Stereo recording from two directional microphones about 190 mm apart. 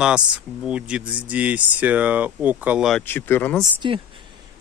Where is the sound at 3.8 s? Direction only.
25° right (ahead or behind).